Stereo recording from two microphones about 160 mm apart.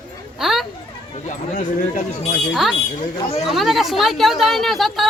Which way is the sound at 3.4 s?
Centre (ahead or behind).